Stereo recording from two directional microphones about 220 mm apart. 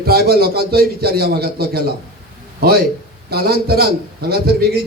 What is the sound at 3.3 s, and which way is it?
A man's voice, 45° right (ahead or behind).